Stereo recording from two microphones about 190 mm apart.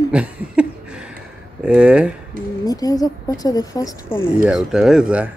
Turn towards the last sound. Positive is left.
turn(degrees=-5)  # may be behind; listen again after turning